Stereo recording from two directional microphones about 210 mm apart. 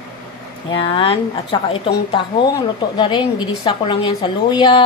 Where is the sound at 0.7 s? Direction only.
25° left (ahead or behind).